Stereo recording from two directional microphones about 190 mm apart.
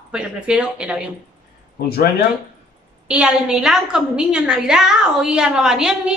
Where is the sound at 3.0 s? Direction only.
5° right (ahead or behind).